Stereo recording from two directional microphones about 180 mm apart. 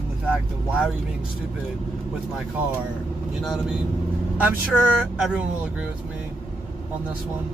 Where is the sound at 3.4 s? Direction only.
Centre (ahead or behind).